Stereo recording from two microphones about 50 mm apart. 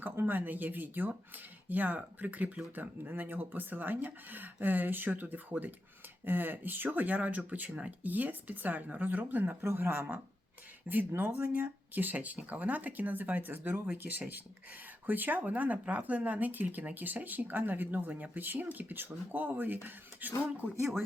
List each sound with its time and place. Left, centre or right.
0.0 s speech: right
10.9 s speech: right
20.7 s speech: right